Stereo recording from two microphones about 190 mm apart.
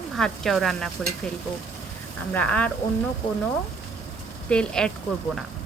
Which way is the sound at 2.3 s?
5° left (ahead or behind).